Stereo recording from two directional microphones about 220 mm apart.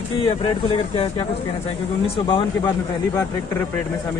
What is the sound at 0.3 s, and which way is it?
Speech, 25° left (ahead or behind).